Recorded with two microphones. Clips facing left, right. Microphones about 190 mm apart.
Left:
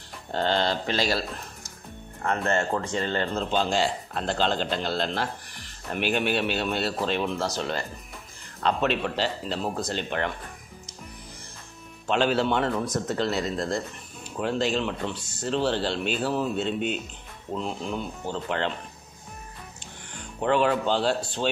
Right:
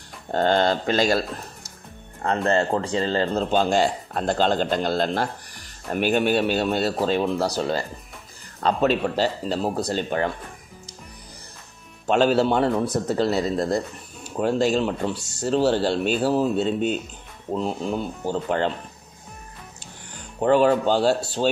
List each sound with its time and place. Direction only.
0.3 s a man's voice: 50° right (ahead or behind)
2.2 s a man's voice: 30° right (ahead or behind)
12.1 s a man's voice: 40° right (ahead or behind)
20.3 s speech: 40° right (ahead or behind)